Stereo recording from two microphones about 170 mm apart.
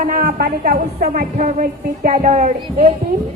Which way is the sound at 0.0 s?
55° right (ahead or behind).